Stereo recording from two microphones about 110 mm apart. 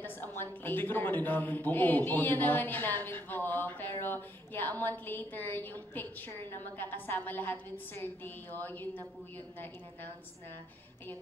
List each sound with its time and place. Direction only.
0.0 s a woman's voice: 20° left (ahead or behind)